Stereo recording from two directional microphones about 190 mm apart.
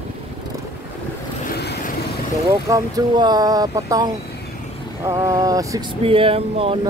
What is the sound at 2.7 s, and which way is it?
Speech, 20° right (ahead or behind).